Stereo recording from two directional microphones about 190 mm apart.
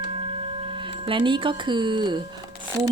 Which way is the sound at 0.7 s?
25° right (ahead or behind).